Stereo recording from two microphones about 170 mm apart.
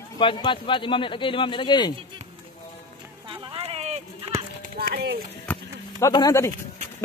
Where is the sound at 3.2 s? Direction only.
30° right (ahead or behind).